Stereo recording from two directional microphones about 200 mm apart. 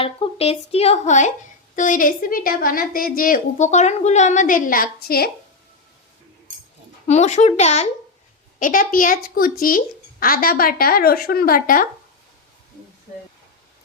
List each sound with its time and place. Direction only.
0.0 s a woman's voice: 30° left (ahead or behind); by 5.3 s 50° left (ahead or behind)
7.1 s a woman's voice: 35° left (ahead or behind)